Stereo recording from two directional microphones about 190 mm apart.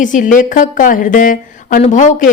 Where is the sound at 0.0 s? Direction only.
40° left (ahead or behind).